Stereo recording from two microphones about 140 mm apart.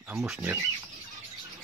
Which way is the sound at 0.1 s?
5° right (ahead or behind).